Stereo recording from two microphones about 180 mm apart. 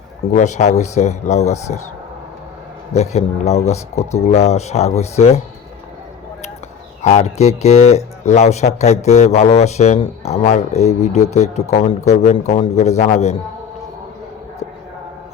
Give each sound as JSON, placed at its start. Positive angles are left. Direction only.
{"t": 0.3, "sound": "speech", "side_deg": 40}
{"t": 2.9, "sound": "speech", "side_deg": 40}
{"t": 7.0, "sound": "speech", "side_deg": 40}